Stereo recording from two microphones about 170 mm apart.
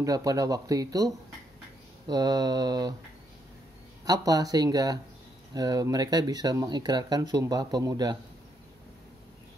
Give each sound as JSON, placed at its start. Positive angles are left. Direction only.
{"t": 0.0, "sound": "speech", "side_deg": -20}
{"t": 4.0, "sound": "speech", "side_deg": -20}